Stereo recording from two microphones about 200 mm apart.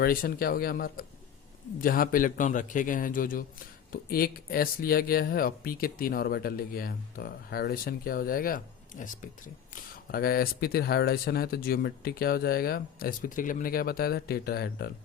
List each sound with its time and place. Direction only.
0.0 s speech: 45° left (ahead or behind)
10.1 s speech: 50° left (ahead or behind)